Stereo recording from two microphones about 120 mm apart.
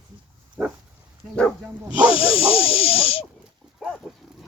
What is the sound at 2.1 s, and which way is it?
Snake, 50° left (ahead or behind).